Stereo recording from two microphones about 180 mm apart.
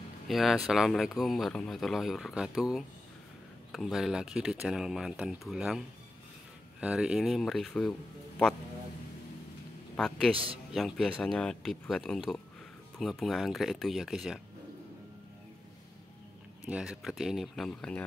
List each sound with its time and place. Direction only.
0.3 s speech: centre (ahead or behind)
9.9 s speech: 5° left (ahead or behind)
10.3 s speech: 30° right (ahead or behind)
10.7 s speech: centre (ahead or behind)
16.6 s speech: 5° right (ahead or behind)